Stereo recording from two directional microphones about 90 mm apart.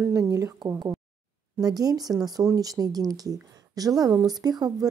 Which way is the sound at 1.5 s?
45° right (ahead or behind).